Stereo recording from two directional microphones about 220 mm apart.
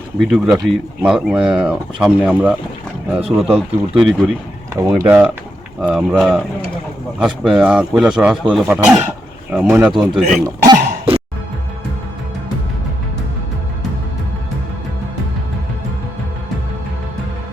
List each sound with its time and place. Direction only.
0.2 s speech: centre (ahead or behind)
4.7 s speech: 10° right (ahead or behind)
10.4 s throat clearing: 15° right (ahead or behind)